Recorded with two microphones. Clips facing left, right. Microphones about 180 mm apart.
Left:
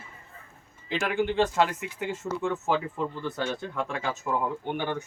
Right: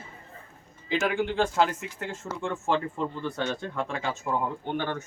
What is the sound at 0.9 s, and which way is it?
Speech, centre (ahead or behind).